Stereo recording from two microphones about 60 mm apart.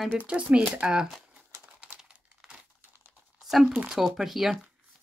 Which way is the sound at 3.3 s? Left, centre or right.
Centre.